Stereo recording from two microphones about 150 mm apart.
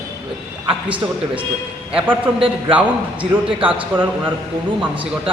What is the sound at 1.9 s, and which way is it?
A man's voice, 5° right (ahead or behind).